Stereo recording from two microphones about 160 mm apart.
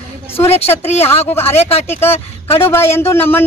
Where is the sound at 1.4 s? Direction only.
40° left (ahead or behind).